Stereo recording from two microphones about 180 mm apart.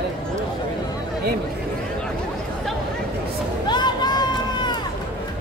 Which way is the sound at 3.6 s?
25° left (ahead or behind).